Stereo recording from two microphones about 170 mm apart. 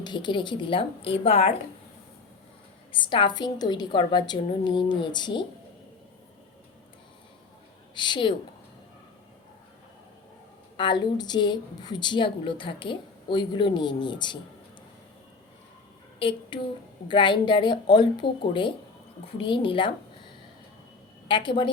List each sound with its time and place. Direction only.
0.0 s a woman's voice: 25° left (ahead or behind)
2.9 s a woman's voice: 30° left (ahead or behind)
7.9 s a woman's voice: 25° left (ahead or behind)
10.8 s a woman's voice: 25° left (ahead or behind)
16.1 s a woman's voice: 30° left (ahead or behind)
21.2 s a woman's voice: 30° left (ahead or behind)